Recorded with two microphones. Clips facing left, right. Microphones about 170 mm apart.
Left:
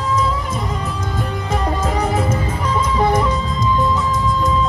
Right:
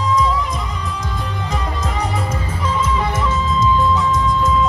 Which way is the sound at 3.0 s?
35° left (ahead or behind).